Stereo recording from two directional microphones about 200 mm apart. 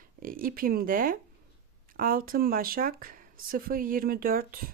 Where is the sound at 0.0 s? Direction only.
45° right (ahead or behind).